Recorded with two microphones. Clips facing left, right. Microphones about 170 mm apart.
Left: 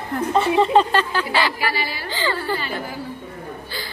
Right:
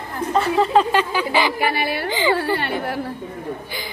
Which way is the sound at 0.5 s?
Centre (ahead or behind).